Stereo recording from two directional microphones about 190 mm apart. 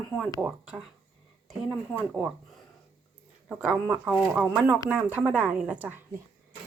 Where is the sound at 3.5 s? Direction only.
5° right (ahead or behind).